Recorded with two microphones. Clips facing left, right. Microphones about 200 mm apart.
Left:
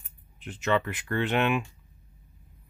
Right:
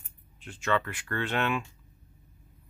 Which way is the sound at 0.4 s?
20° left (ahead or behind).